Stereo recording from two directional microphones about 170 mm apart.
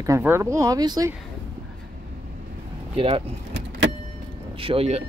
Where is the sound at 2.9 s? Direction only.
35° right (ahead or behind).